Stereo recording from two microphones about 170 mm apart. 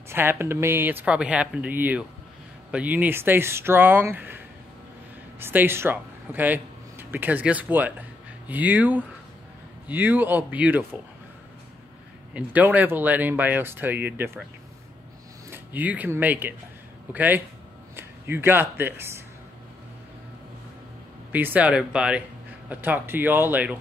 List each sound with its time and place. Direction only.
0.1 s speech: 15° right (ahead or behind)
5.4 s speech: 10° right (ahead or behind)
12.4 s speech: 10° right (ahead or behind)
15.5 s speech: 10° right (ahead or behind)
21.3 s speech: 10° right (ahead or behind)